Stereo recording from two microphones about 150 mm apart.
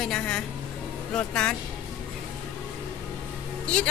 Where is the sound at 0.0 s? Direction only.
5° left (ahead or behind).